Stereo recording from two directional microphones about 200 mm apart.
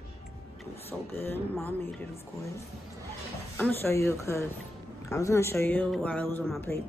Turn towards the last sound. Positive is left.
turn(degrees=10)  # may be behind; listen again after turning